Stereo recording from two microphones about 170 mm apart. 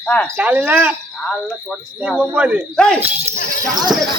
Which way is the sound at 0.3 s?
10° right (ahead or behind).